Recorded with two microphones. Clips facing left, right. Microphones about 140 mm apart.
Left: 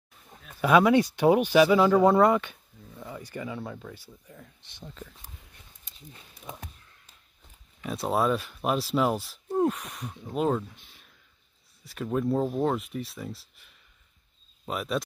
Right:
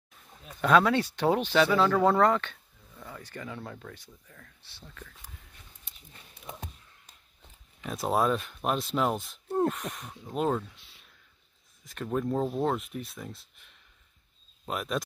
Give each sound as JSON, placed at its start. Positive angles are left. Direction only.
{"t": 0.6, "sound": "speech", "side_deg": 10}
{"t": 4.3, "sound": "speech", "side_deg": 20}
{"t": 7.8, "sound": "speech", "side_deg": 0}
{"t": 10.8, "sound": "a sound", "side_deg": 50}
{"t": 11.8, "sound": "speech", "side_deg": 5}